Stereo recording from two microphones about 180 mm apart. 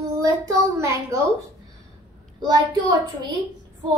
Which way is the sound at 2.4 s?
20° right (ahead or behind).